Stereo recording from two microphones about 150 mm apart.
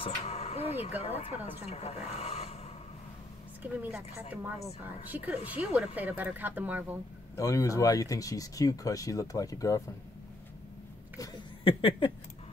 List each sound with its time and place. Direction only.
0.0 s speech: 45° left (ahead or behind)
3.6 s speech: 10° right (ahead or behind)
7.3 s speech: 20° left (ahead or behind)
11.1 s speech: 30° left (ahead or behind)